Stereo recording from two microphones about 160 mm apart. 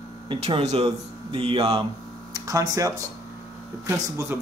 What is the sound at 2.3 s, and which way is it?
Speech, 20° right (ahead or behind).